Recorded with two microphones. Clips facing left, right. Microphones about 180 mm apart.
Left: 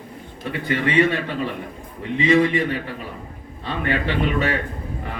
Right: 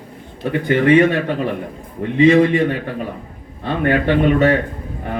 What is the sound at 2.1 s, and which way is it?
A man's voice, 55° right (ahead or behind).